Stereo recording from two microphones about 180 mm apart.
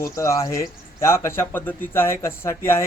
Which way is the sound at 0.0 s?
15° left (ahead or behind).